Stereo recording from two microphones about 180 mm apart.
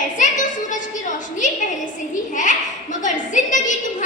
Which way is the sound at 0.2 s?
45° left (ahead or behind).